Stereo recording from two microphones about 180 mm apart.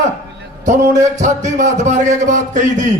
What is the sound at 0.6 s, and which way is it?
A man's voice, 40° right (ahead or behind).